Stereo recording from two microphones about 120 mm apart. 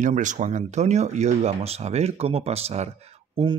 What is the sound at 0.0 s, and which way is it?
Speech, 90° right.